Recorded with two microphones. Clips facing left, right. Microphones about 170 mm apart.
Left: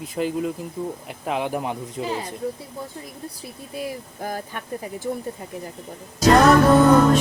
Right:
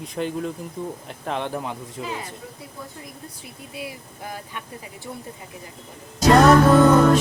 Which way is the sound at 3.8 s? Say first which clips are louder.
Left 5 dB; 40° left (ahead or behind).